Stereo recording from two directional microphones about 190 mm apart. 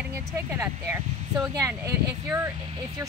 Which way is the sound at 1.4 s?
15° right (ahead or behind).